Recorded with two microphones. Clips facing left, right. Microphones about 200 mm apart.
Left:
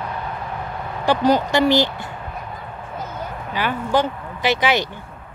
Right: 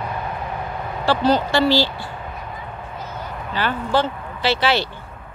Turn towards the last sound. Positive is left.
turn(degrees=15)  # may be behind; listen again after turning